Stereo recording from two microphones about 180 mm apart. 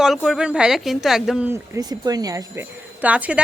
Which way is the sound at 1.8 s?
20° right (ahead or behind).